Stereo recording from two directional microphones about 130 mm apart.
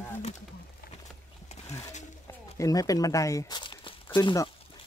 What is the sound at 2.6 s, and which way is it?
Speech, 25° left (ahead or behind).